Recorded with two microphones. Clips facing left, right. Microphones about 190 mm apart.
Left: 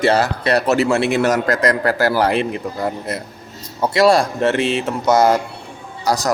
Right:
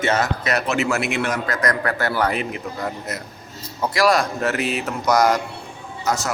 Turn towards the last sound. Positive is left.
turn(degrees=35)  # may be behind; listen again after turning